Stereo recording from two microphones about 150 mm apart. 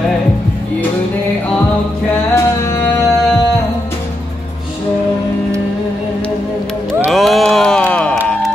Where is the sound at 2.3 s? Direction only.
20° left (ahead or behind).